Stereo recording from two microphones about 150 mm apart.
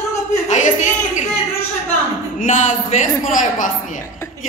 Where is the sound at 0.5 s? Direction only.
55° left (ahead or behind).